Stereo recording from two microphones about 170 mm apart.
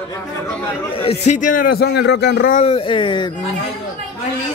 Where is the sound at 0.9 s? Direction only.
35° left (ahead or behind); by 2.5 s 70° left (ahead or behind).